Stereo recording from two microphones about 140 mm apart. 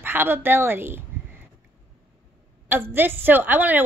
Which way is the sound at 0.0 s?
15° right (ahead or behind).